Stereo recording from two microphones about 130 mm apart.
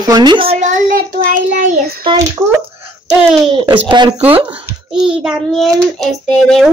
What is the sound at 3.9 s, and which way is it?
Speech, 35° right (ahead or behind).